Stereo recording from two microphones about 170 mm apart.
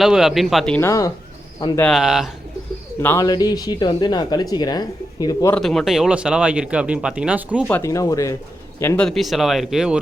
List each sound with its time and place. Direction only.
0.0 s speech: centre (ahead or behind)
0.8 s speech: 20° left (ahead or behind)
1.8 s speech: centre (ahead or behind)
3.0 s speech: 15° left (ahead or behind)
5.5 s speech: centre (ahead or behind)
7.7 s speech: 15° left (ahead or behind)
9.0 s speech: centre (ahead or behind)